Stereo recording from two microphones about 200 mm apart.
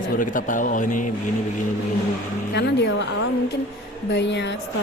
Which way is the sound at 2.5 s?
60° left (ahead or behind).